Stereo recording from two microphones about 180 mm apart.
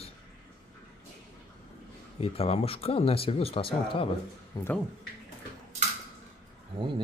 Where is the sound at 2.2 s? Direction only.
35° left (ahead or behind).